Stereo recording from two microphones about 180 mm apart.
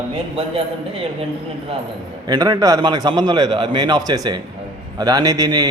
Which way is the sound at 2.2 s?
20° right (ahead or behind).